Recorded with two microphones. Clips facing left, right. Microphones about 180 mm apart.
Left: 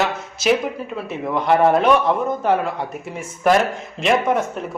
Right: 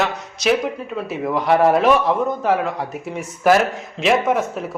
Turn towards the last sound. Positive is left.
turn(degrees=0)  # may be behind; listen again after turning